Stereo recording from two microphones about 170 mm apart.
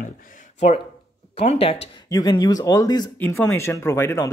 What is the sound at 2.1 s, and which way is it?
Speech, 20° left (ahead or behind).